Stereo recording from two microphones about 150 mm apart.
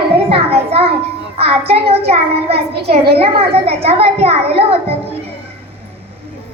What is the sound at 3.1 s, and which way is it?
A child's voice, 40° right (ahead or behind).